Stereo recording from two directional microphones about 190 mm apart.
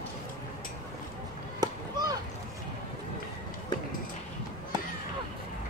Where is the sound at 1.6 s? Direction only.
20° right (ahead or behind).